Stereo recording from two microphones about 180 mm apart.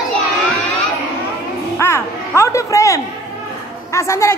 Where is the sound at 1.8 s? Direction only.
15° left (ahead or behind).